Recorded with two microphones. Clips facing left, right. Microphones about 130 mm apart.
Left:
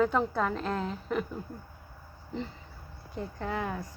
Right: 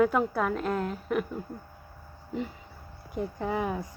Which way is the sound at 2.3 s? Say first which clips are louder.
Right 3 dB; 10° right (ahead or behind).